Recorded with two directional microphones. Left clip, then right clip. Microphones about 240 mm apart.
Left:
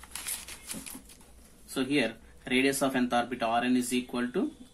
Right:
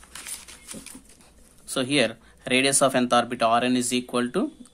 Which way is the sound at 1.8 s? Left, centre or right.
Right.